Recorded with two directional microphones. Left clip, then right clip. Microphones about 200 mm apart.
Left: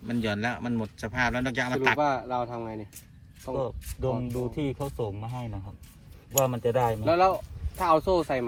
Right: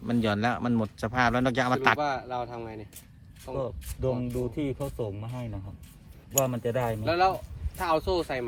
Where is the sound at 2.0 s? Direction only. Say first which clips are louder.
Left 3 dB; 30° left (ahead or behind).